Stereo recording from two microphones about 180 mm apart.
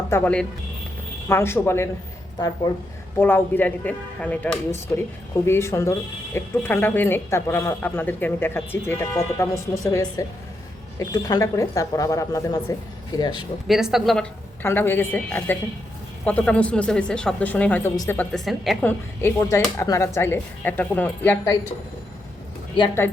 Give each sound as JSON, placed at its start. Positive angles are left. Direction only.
{"t": 0.1, "sound": "a woman's voice", "side_deg": 10}
{"t": 3.2, "sound": "a woman's voice", "side_deg": 10}
{"t": 13.7, "sound": "speech", "side_deg": 0}
{"t": 14.6, "sound": "a woman's voice", "side_deg": 10}
{"t": 18.2, "sound": "speech", "side_deg": 5}
{"t": 18.9, "sound": "speech", "side_deg": 15}